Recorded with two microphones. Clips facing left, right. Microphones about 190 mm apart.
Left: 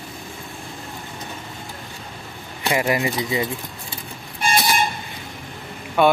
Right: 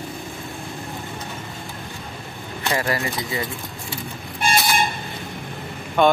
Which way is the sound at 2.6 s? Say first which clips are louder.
Left 3 dB; 15° left (ahead or behind).